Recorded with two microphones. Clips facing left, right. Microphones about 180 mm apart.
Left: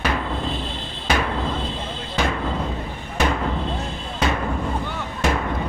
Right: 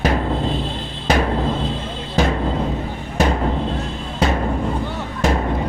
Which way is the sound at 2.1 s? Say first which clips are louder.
Right 5 dB; 35° right (ahead or behind).